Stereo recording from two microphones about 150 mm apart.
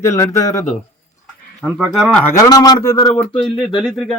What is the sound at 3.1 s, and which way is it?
Speech, 10° left (ahead or behind).